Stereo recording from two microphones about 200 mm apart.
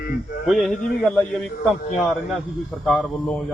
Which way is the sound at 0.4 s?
Centre (ahead or behind).